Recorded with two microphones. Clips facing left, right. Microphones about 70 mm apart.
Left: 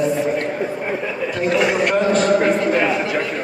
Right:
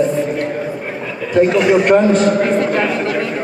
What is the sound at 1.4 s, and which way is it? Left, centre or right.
Speech, centre.